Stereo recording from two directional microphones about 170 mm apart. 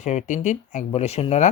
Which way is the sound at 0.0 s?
45° left (ahead or behind).